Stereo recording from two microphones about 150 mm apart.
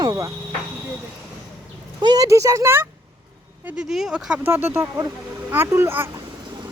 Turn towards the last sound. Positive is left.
turn(degrees=-15)  # may be behind; listen again after turning